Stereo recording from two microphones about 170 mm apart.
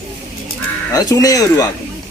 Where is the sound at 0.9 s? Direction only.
20° left (ahead or behind).